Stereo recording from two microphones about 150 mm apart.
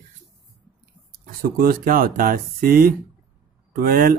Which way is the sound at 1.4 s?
75° right (ahead or behind).